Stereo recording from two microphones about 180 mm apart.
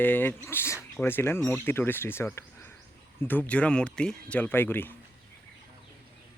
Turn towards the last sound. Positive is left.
turn(degrees=10)  # may be behind; listen again after turning